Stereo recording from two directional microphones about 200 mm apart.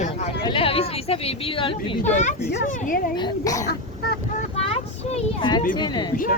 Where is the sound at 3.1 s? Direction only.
20° left (ahead or behind).